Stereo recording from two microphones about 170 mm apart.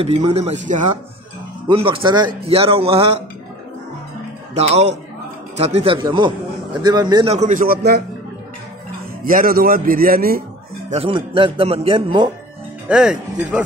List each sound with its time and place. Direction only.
0.0 s speech: 40° right (ahead or behind)
1.7 s speech: 30° right (ahead or behind)
4.6 s speech: 40° right (ahead or behind)
7.3 s a man's voice: 50° right (ahead or behind); by 8.0 s 65° right (ahead or behind)
9.2 s a man's voice: 55° right (ahead or behind)
10.9 s speech: 35° right (ahead or behind)
12.8 s speech: 5° right (ahead or behind)